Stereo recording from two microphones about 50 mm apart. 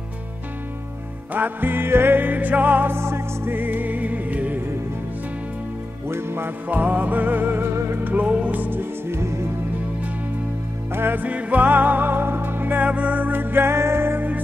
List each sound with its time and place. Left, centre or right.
1.3 s music: right
2.9 s music: right
3.5 s music: right
6.0 s music: right
6.7 s music: right
7.7 s music: right
8.0 s music: right
9.0 s music: right
10.9 s music: right
11.1 s music: right
12.8 s music: right